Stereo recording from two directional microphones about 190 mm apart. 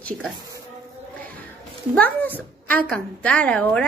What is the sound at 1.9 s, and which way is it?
Speech, 10° left (ahead or behind).